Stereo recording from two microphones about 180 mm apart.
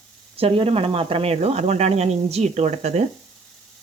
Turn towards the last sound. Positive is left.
turn(degrees=-40)  # may be behind; listen again after turning